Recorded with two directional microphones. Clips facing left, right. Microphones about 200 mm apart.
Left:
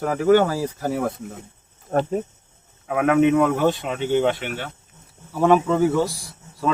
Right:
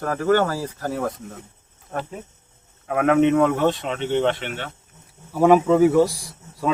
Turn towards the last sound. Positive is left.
turn(degrees=-15)  # may be behind; listen again after turning